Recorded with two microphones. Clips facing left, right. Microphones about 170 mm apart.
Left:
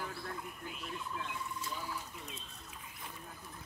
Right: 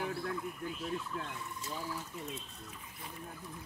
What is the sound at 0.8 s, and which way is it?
Speech, 40° right (ahead or behind).